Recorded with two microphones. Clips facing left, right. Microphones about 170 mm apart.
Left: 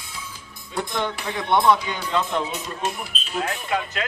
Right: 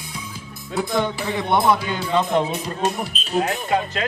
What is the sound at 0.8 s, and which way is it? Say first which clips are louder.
Speech: right 4 dB; 5° right (ahead or behind).